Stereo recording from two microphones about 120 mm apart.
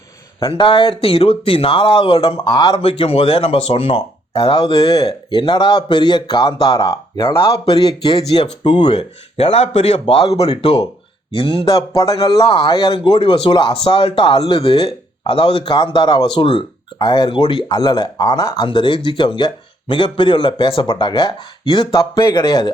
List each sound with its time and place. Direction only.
0.3 s speech: 45° left (ahead or behind)
2.8 s speech: 55° left (ahead or behind)
10.5 s speech: 40° left (ahead or behind)